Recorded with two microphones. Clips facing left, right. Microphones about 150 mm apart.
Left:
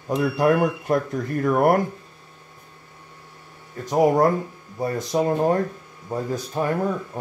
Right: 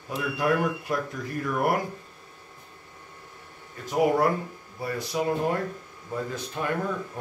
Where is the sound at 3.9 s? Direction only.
40° left (ahead or behind).